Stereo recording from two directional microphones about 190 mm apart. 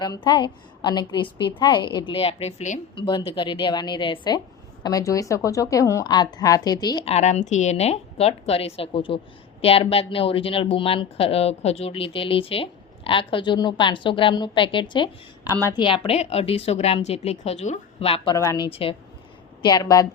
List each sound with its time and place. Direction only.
0.0 s a woman's voice: 20° left (ahead or behind)
2.9 s a woman's voice: 25° left (ahead or behind)
18.3 s a woman's voice: 20° left (ahead or behind)
18.7 s a woman's voice: 30° left (ahead or behind)